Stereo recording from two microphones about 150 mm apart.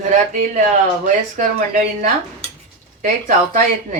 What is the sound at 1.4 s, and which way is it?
Speech, 65° right (ahead or behind).